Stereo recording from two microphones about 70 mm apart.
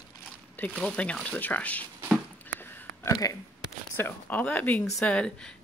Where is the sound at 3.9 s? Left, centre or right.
Left.